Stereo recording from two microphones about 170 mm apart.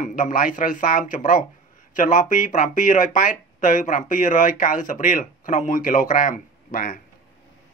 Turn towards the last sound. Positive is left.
turn(degrees=60)  # may be behind; listen again after turning